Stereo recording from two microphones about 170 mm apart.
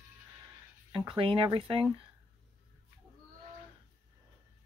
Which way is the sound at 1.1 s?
30° right (ahead or behind).